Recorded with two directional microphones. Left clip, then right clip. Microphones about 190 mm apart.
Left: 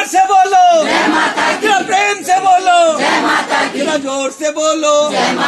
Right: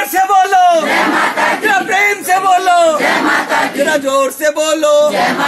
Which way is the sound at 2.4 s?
25° right (ahead or behind).